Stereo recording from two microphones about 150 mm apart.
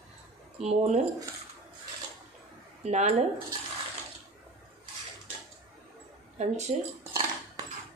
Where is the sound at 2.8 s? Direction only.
45° right (ahead or behind).